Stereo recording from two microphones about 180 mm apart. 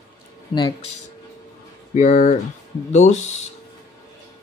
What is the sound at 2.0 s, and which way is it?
Speech, 45° left (ahead or behind).